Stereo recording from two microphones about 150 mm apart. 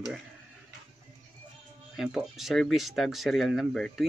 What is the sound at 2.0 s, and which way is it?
Speech, 5° right (ahead or behind).